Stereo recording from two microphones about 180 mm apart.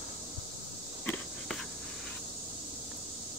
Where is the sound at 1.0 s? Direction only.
5° left (ahead or behind).